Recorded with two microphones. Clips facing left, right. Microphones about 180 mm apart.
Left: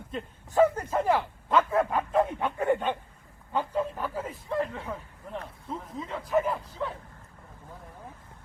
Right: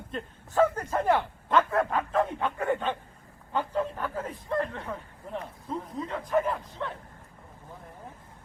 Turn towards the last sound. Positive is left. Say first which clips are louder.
# left 1 dB
turn(degrees=5)  # may be behind; listen again after turning